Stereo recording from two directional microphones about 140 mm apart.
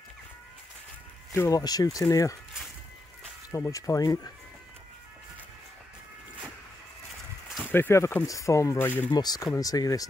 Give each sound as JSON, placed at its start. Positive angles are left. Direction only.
{"t": 1.3, "sound": "speech", "side_deg": 20}
{"t": 3.5, "sound": "speech", "side_deg": 25}
{"t": 7.6, "sound": "speech", "side_deg": 15}
{"t": 9.1, "sound": "speech", "side_deg": 30}